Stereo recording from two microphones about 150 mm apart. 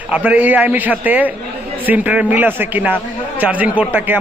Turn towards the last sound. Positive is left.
turn(degrees=-10)  # may be behind; listen again after turning